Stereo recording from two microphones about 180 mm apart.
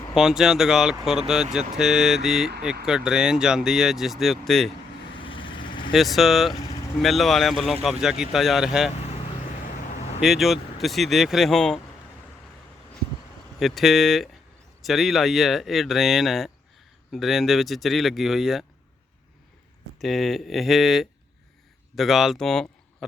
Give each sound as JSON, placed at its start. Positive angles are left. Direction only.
{"t": 0.1, "sound": "speech", "side_deg": -5}
{"t": 5.2, "sound": "vehicle", "side_deg": 30}
{"t": 5.9, "sound": "speech", "side_deg": 0}
{"t": 10.2, "sound": "speech", "side_deg": 0}
{"t": 13.6, "sound": "speech", "side_deg": 0}
{"t": 20.0, "sound": "speech", "side_deg": 0}